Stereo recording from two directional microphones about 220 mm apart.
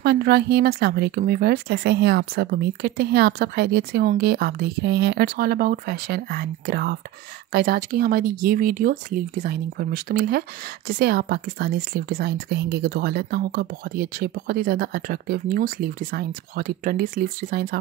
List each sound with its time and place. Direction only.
0.0 s a woman's voice: 45° right (ahead or behind)